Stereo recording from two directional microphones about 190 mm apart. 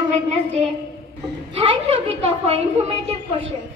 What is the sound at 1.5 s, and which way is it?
A woman's voice, 30° right (ahead or behind).